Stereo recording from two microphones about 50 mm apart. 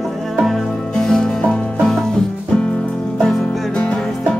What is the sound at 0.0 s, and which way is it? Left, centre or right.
Music, centre.